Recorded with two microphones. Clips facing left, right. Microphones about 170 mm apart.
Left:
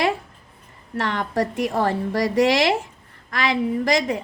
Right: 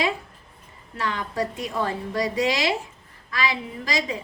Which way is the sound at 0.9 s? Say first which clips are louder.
Left 4 dB; 65° left (ahead or behind).